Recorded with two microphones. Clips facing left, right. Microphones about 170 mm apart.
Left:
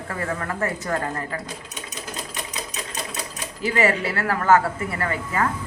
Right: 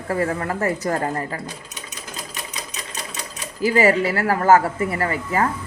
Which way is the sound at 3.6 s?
40° right (ahead or behind).